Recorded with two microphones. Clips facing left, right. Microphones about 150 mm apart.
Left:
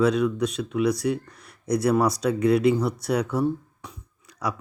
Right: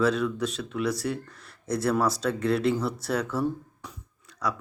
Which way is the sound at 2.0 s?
15° left (ahead or behind).